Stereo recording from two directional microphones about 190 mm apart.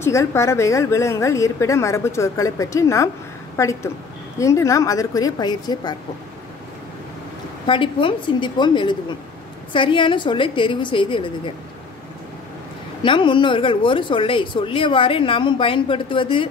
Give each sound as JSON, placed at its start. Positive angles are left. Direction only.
{"t": 0.0, "sound": "a woman's voice", "side_deg": 15}
{"t": 7.6, "sound": "speech", "side_deg": 25}
{"t": 13.0, "sound": "speech", "side_deg": 25}